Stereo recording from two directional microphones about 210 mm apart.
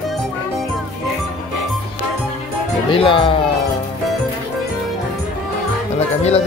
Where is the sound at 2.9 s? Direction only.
25° left (ahead or behind).